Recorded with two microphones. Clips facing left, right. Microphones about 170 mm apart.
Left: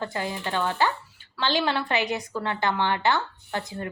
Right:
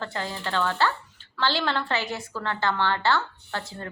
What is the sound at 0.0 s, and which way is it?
A woman's voice, 15° left (ahead or behind).